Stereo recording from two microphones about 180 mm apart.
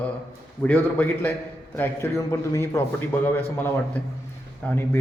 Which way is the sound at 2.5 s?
15° left (ahead or behind).